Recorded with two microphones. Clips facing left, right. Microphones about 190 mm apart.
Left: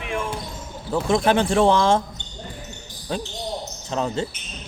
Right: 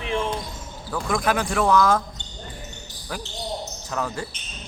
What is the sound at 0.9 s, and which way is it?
Speech, 25° left (ahead or behind).